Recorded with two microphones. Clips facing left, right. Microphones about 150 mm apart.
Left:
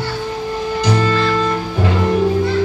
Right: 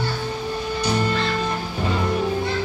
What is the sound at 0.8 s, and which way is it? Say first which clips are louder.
Music: left 6 dB; 90° left.